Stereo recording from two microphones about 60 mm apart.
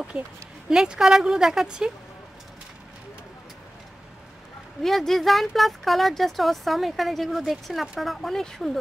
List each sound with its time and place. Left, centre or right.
0.7 s speech: centre
4.8 s speech: centre